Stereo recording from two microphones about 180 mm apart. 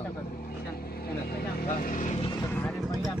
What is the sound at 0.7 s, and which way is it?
Speech, 60° left (ahead or behind).